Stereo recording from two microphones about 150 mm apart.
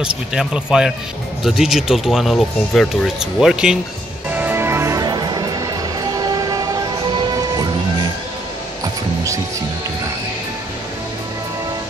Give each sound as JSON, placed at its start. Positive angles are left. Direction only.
{"t": 0.0, "sound": "speech", "side_deg": -5}
{"t": 4.3, "sound": "music", "side_deg": -10}